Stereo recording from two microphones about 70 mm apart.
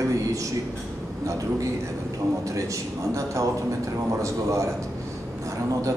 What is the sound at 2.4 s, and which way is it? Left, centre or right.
A man's voice, right.